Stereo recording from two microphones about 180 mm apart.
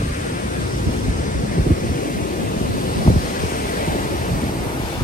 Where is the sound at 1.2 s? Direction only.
50° left (ahead or behind).